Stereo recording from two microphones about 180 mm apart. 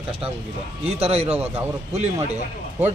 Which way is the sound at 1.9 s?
40° right (ahead or behind).